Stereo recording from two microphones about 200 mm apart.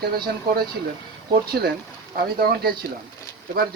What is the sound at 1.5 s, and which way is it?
Speech, 50° right (ahead or behind).